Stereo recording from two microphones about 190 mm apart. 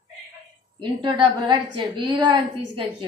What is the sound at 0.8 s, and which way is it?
A woman's voice, 25° right (ahead or behind).